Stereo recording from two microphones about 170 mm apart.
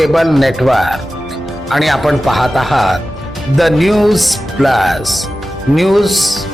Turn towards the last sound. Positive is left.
turn(degrees=0)  # may be behind; listen again after turning